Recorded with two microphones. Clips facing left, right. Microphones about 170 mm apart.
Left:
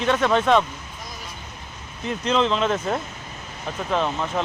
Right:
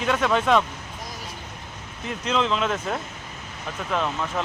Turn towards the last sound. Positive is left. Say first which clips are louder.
# left 2 dB
turn(degrees=30)  # may be behind; listen again after turning